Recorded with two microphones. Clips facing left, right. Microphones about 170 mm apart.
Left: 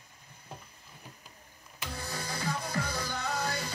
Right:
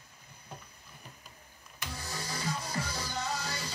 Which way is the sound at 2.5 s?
55° left (ahead or behind).